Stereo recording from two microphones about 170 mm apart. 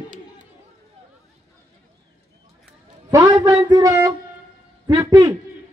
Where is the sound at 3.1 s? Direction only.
20° right (ahead or behind).